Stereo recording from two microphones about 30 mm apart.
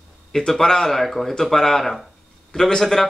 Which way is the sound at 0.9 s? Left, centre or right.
Centre.